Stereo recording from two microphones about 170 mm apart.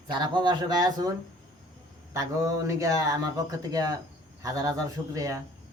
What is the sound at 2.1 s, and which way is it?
Speech, 20° right (ahead or behind).